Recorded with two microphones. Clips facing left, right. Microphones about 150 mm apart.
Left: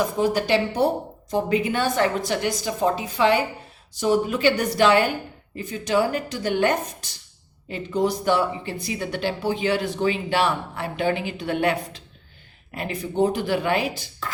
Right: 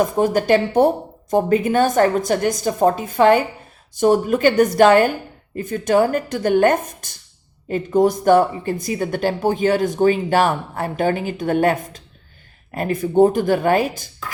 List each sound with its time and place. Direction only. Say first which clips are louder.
0.0 s speech: right 4 dB; 50° right (ahead or behind)